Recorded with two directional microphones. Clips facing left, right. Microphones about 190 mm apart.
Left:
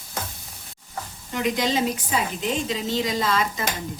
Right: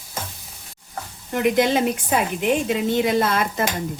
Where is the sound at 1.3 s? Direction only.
55° right (ahead or behind).